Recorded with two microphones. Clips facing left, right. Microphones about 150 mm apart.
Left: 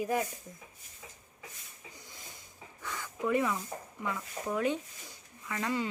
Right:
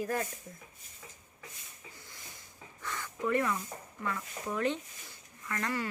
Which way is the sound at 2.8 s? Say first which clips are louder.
Even; 10° left (ahead or behind).